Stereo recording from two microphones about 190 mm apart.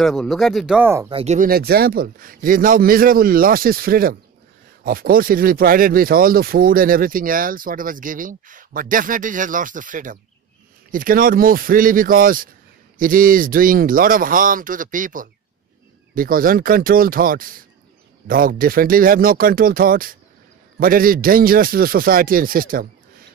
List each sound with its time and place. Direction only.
0.0 s speech: centre (ahead or behind)
1.1 s speech: 35° right (ahead or behind)
1.5 s speech: 55° right (ahead or behind)